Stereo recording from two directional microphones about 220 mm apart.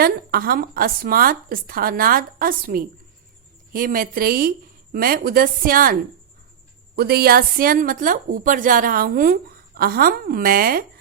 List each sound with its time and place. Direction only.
0.0 s a woman's voice: 45° right (ahead or behind)